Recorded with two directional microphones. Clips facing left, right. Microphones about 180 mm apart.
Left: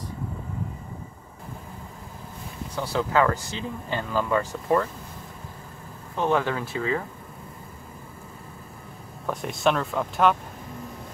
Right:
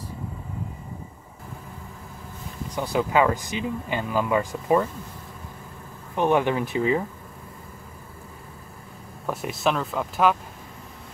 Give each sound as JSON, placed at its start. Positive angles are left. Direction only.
{"t": 2.7, "sound": "speech", "side_deg": -15}
{"t": 6.1, "sound": "speech", "side_deg": -15}
{"t": 9.2, "sound": "speech", "side_deg": -5}